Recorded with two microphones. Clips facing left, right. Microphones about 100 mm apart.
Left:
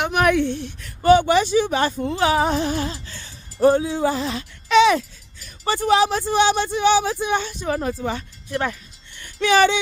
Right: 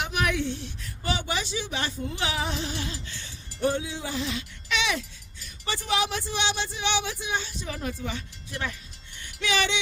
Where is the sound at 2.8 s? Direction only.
40° left (ahead or behind).